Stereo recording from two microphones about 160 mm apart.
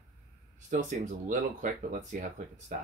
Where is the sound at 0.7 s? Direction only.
50° right (ahead or behind).